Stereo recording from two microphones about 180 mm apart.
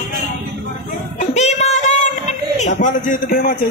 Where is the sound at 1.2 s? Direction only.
40° left (ahead or behind).